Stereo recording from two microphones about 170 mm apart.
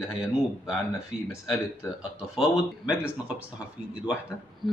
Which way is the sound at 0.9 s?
15° left (ahead or behind).